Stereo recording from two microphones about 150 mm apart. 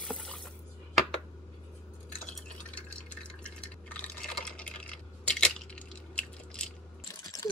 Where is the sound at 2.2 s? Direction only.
5° left (ahead or behind).